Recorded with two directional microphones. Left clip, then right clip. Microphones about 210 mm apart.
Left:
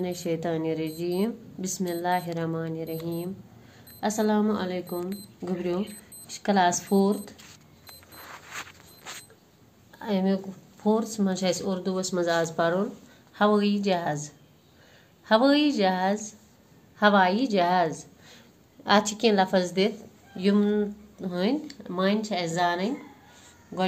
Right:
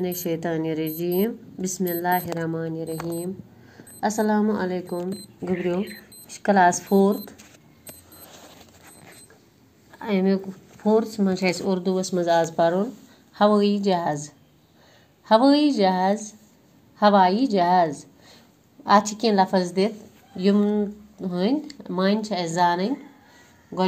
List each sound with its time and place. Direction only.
0.0 s speech: centre (ahead or behind)
4.1 s speech: 10° left (ahead or behind)
5.7 s speech: 10° right (ahead or behind)
9.9 s speech: centre (ahead or behind); by 22.9 s 20° right (ahead or behind)